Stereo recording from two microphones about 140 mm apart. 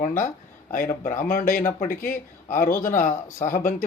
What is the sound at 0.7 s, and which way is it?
Speech, 70° left (ahead or behind).